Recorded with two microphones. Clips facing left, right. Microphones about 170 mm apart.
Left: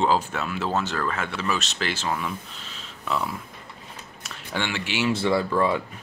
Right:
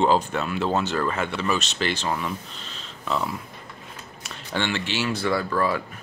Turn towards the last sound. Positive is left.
turn(degrees=20)  # may be behind; listen again after turning